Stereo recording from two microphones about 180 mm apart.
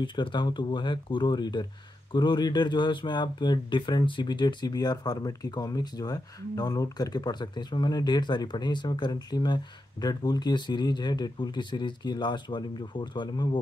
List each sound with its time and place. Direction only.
0.0 s speech: 25° left (ahead or behind)